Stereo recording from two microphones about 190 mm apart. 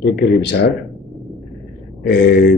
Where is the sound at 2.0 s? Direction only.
60° left (ahead or behind).